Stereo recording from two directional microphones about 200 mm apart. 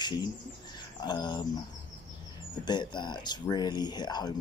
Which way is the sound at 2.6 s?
20° left (ahead or behind).